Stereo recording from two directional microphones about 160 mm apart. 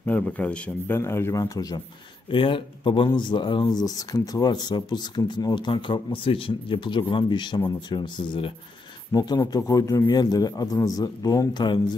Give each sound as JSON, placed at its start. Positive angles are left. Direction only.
{"t": 0.0, "sound": "a man's voice", "side_deg": 10}
{"t": 2.3, "sound": "speech", "side_deg": 30}